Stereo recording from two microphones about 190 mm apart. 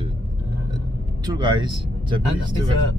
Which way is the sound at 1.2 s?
25° right (ahead or behind).